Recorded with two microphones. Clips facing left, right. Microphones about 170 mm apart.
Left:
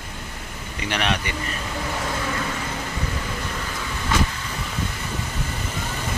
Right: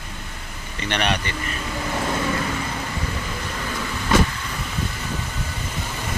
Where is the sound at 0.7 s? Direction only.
5° left (ahead or behind).